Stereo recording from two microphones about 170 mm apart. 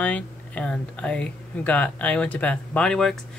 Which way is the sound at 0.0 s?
10° left (ahead or behind).